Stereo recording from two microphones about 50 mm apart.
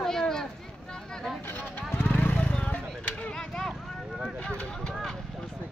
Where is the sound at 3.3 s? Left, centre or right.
Centre.